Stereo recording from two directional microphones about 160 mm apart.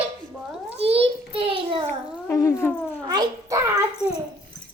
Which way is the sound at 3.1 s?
20° right (ahead or behind).